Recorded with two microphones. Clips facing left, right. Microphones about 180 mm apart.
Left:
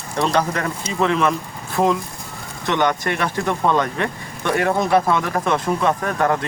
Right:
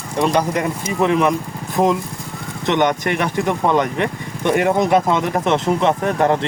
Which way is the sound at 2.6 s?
20° right (ahead or behind).